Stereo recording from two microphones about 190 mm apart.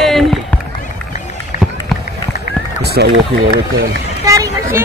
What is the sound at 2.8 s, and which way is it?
Speech, 60° right (ahead or behind).